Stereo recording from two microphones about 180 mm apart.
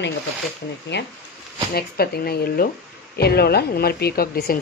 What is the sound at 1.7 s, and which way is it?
Speech, 60° left (ahead or behind).